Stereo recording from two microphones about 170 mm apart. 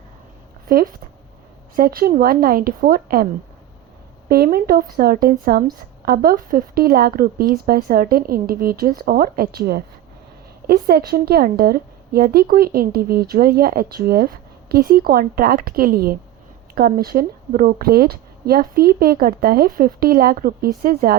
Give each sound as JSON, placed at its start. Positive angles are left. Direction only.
{"t": 0.7, "sound": "a woman's voice", "side_deg": -60}
{"t": 4.3, "sound": "a woman's voice", "side_deg": -60}